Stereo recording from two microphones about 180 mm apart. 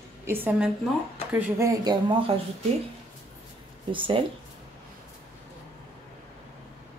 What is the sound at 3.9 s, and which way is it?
Speech, 30° right (ahead or behind).